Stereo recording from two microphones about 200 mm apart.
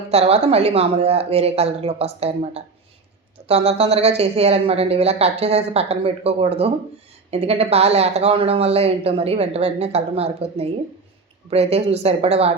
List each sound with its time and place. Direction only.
0.1 s speech: 30° right (ahead or behind)